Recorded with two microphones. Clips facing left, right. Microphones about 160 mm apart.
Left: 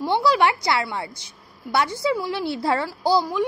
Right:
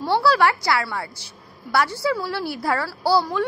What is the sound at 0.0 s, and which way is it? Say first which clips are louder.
A woman's voice: right 1 dB; 20° left (ahead or behind).